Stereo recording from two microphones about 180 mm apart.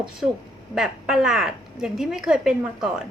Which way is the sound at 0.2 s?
5° right (ahead or behind).